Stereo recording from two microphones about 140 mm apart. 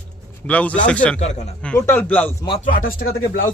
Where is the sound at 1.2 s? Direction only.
55° left (ahead or behind).